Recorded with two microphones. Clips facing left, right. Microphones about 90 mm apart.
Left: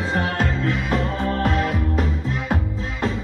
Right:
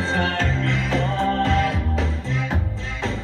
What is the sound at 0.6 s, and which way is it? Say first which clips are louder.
Music: left 1 dB; 75° right (ahead or behind).